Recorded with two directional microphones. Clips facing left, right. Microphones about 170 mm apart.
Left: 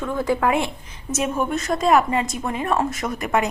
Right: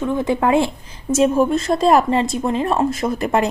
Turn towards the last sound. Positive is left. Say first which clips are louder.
# right 4 dB
turn(degrees=-30)  # may be behind; listen again after turning